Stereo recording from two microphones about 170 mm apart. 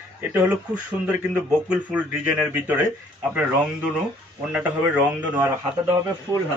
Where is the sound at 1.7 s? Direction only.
5° right (ahead or behind).